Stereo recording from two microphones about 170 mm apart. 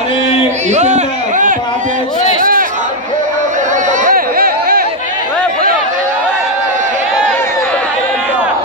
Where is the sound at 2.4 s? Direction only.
55° right (ahead or behind).